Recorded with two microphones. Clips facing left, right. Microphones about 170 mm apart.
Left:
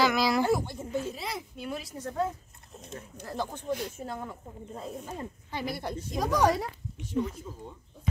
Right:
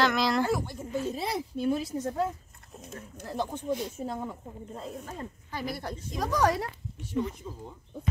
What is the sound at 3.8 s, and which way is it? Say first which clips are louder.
Speech: right 2 dB; centre (ahead or behind).